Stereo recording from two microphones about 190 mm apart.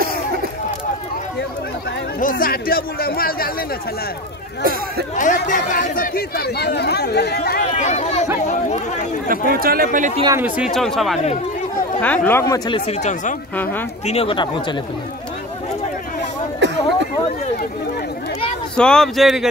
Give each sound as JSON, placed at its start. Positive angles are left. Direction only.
{"t": 2.1, "sound": "speech", "side_deg": 45}
{"t": 5.1, "sound": "speech", "side_deg": 45}
{"t": 7.6, "sound": "speech", "side_deg": 40}
{"t": 9.3, "sound": "speech", "side_deg": -50}
{"t": 10.2, "sound": "speech", "side_deg": -10}
{"t": 10.7, "sound": "speech", "side_deg": 0}
{"t": 13.6, "sound": "speech", "side_deg": 10}
{"t": 14.0, "sound": "speech", "side_deg": 30}
{"t": 16.5, "sound": "a sound", "side_deg": -70}
{"t": 18.8, "sound": "speech", "side_deg": 5}